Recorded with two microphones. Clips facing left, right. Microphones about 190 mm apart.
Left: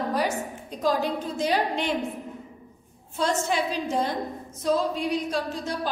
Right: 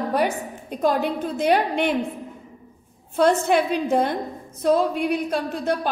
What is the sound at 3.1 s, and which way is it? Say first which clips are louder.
A woman's voice: right 7 dB; 60° right (ahead or behind).